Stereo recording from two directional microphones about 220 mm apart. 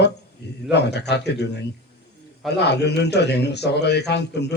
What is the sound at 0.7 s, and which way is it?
Speech, 50° left (ahead or behind).